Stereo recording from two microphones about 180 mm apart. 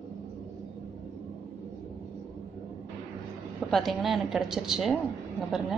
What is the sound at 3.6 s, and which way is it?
A woman's voice, centre (ahead or behind).